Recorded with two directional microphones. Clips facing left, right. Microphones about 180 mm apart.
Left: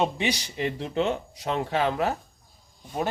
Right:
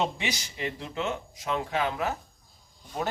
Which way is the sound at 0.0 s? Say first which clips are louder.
Left 4 dB; 35° left (ahead or behind).